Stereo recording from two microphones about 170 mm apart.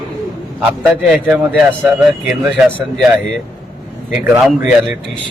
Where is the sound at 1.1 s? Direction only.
5° right (ahead or behind).